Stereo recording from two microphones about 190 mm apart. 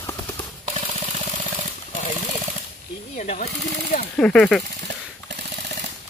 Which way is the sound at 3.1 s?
40° left (ahead or behind).